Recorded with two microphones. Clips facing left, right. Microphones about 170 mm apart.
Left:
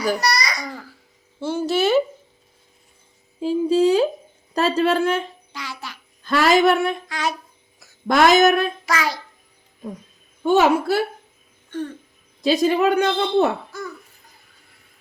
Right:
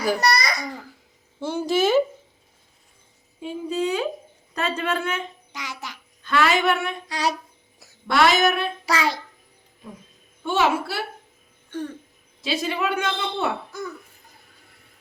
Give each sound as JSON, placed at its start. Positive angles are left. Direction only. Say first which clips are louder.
{"t": 0.2, "sound": "babbling", "louder": "right 1 dB", "side_deg": -55}
{"t": 1.4, "sound": "speech", "louder": "left 1 dB", "side_deg": -15}
{"t": 3.4, "sound": "a woman's voice", "louder": "left 9 dB", "side_deg": 35}
{"t": 5.5, "sound": "music", "louder": "left 1 dB", "side_deg": -20}
{"t": 6.2, "sound": "a woman's voice", "louder": "left 5 dB", "side_deg": 40}
{"t": 7.1, "sound": "speech", "louder": "right 1 dB", "side_deg": -35}
{"t": 8.0, "sound": "speech", "louder": "left 5 dB", "side_deg": 45}
{"t": 8.9, "sound": "a child's voice", "louder": "right 3 dB", "side_deg": -25}
{"t": 10.4, "sound": "speech", "louder": "left 6 dB", "side_deg": 45}
{"t": 12.4, "sound": "a woman's voice", "louder": "left 8 dB", "side_deg": 40}